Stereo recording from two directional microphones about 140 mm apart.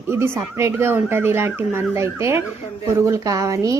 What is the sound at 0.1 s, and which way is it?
A woman's voice, 20° right (ahead or behind).